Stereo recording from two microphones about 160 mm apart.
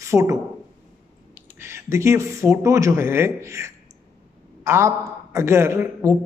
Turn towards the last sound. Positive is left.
turn(degrees=-15)  # may be behind; listen again after turning